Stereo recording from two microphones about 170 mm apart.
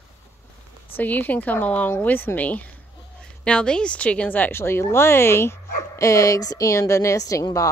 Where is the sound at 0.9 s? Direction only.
10° left (ahead or behind).